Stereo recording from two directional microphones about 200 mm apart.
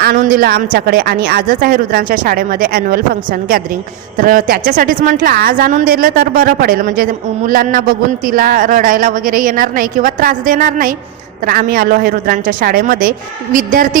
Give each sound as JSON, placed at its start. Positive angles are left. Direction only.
{"t": 0.0, "sound": "a woman's voice", "side_deg": -45}
{"t": 4.2, "sound": "a woman's voice", "side_deg": -45}